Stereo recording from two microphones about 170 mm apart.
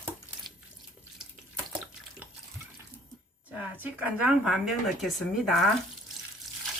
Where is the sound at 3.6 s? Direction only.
10° right (ahead or behind).